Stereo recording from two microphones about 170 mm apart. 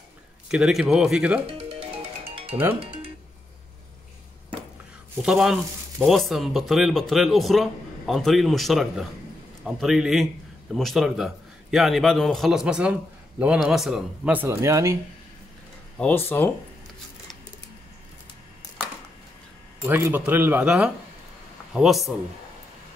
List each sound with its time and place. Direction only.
0.5 s speech: centre (ahead or behind)
1.6 s music: 35° right (ahead or behind)
2.8 s speech: 30° right (ahead or behind)
5.2 s speech: 5° right (ahead or behind)
16.0 s speech: 10° left (ahead or behind)
19.8 s speech: 15° right (ahead or behind)